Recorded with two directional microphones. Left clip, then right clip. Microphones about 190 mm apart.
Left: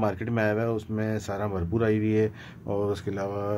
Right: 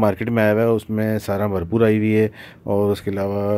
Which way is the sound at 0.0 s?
35° right (ahead or behind).